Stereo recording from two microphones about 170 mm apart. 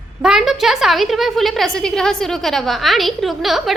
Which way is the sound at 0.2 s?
5° right (ahead or behind).